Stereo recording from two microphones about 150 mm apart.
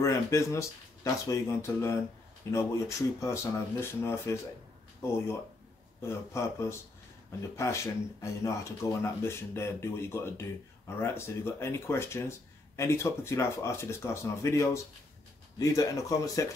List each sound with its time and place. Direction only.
0.0 s speech: 20° left (ahead or behind)
6.0 s speech: 20° left (ahead or behind)